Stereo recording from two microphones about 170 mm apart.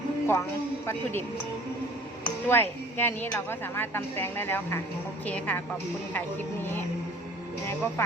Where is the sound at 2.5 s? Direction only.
10° left (ahead or behind).